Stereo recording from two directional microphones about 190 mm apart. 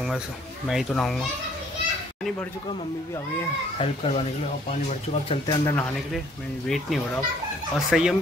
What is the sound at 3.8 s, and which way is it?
Speech, 30° left (ahead or behind).